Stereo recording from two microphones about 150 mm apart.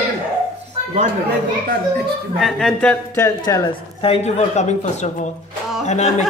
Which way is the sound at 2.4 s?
5° left (ahead or behind).